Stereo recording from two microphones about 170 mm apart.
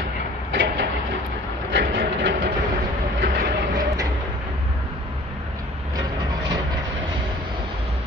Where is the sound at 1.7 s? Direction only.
90° right.